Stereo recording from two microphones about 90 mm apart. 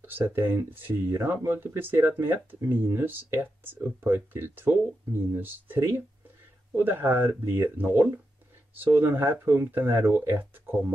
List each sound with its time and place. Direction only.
0.3 s speech: 25° right (ahead or behind)